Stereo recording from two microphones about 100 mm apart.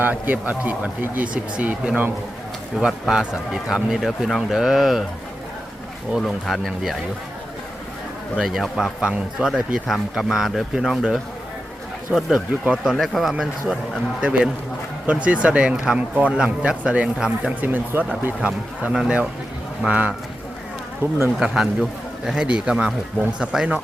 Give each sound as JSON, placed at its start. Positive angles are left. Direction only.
{"t": 0.0, "sound": "speech", "side_deg": -15}
{"t": 6.1, "sound": "speech", "side_deg": 0}
{"t": 8.4, "sound": "speech", "side_deg": 0}
{"t": 21.3, "sound": "speech", "side_deg": -5}